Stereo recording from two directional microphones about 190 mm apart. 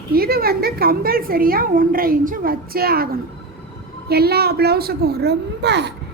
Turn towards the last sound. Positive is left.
turn(degrees=-65)  # may be behind; listen again after turning